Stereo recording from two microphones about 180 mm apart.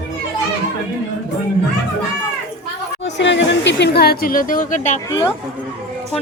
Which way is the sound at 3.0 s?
80° left.